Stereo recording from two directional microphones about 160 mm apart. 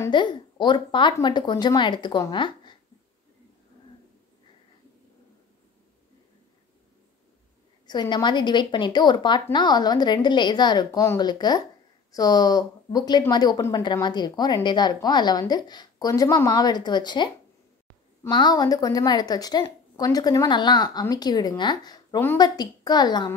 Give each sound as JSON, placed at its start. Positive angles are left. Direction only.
{"t": 0.1, "sound": "a woman's voice", "side_deg": 30}
{"t": 7.8, "sound": "a woman's voice", "side_deg": 25}
{"t": 18.3, "sound": "a woman's voice", "side_deg": 25}